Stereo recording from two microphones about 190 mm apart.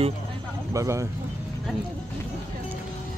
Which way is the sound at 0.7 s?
15° right (ahead or behind).